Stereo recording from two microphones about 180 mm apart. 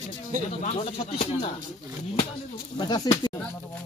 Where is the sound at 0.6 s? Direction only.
35° left (ahead or behind).